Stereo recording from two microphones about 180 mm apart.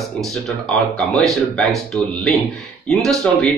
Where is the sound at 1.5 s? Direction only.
Centre (ahead or behind).